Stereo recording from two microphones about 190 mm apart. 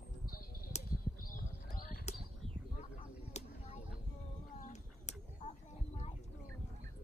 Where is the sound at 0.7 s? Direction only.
35° left (ahead or behind).